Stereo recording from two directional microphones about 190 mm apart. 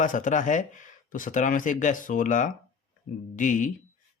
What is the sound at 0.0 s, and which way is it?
Speech, 40° left (ahead or behind).